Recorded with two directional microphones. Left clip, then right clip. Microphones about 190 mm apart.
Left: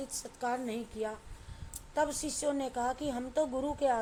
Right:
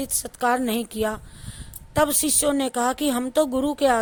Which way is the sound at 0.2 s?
45° right (ahead or behind).